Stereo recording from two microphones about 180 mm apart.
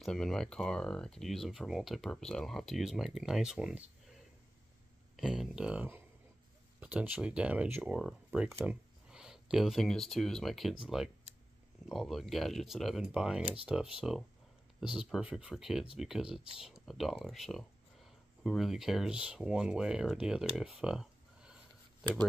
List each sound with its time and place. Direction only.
0.0 s speech: 5° left (ahead or behind)
5.1 s speech: centre (ahead or behind)
20.5 s a sound: 5° right (ahead or behind)